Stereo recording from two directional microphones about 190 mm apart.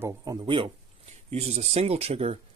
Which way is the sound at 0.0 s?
20° right (ahead or behind).